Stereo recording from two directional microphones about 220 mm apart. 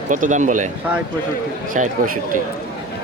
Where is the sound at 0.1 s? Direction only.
35° right (ahead or behind).